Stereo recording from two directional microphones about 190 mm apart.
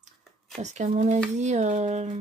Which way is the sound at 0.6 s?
40° right (ahead or behind).